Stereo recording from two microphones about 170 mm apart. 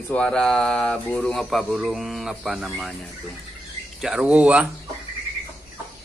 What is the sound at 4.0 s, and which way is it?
Speech, 5° right (ahead or behind).